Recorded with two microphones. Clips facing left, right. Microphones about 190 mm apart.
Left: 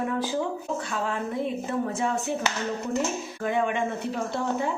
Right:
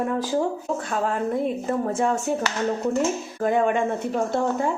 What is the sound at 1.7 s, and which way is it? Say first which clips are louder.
Speech: right 5 dB; 50° right (ahead or behind).